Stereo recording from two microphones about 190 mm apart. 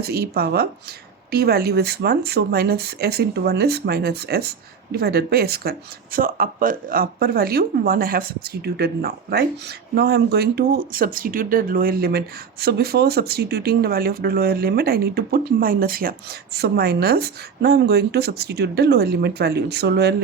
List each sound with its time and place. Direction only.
0.0 s speech: 55° right (ahead or behind)